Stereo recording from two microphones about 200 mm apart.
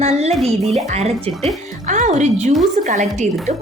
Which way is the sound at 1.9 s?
35° right (ahead or behind).